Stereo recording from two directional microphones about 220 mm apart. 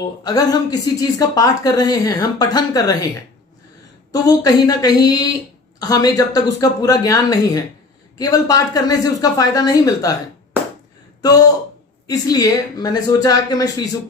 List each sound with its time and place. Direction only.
0.2 s speech: 15° left (ahead or behind)
4.1 s speech: 15° left (ahead or behind)
11.1 s speech: 15° left (ahead or behind)